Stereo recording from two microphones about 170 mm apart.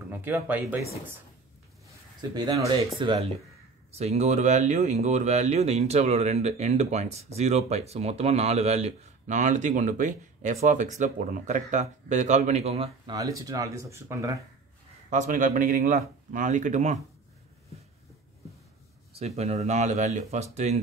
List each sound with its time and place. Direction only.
0.1 s speech: 10° right (ahead or behind)
2.3 s speech: 20° right (ahead or behind)
13.1 s speech: 20° right (ahead or behind)
15.0 s speech: 50° right (ahead or behind)
19.1 s speech: 40° right (ahead or behind)